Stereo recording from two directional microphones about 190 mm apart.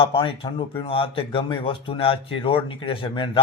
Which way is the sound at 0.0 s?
25° left (ahead or behind).